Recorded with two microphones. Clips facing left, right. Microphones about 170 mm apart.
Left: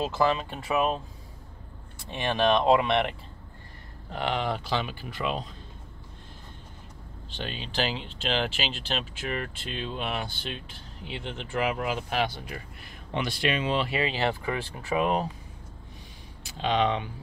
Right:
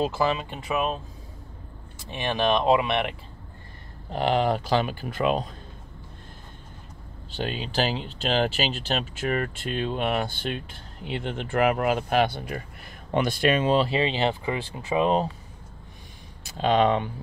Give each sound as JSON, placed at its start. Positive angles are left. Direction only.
{"t": 0.0, "sound": "speech", "side_deg": -10}
{"t": 2.1, "sound": "speech", "side_deg": -5}
{"t": 4.1, "sound": "speech", "side_deg": -35}
{"t": 7.3, "sound": "speech", "side_deg": -40}
{"t": 13.8, "sound": "speech", "side_deg": -25}
{"t": 16.4, "sound": "speech", "side_deg": -45}